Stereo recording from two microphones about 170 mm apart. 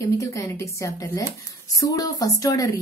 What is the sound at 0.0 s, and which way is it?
A woman's voice, 15° left (ahead or behind).